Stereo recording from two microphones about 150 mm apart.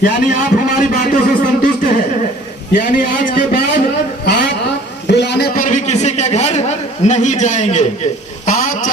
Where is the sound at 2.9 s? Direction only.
60° left (ahead or behind).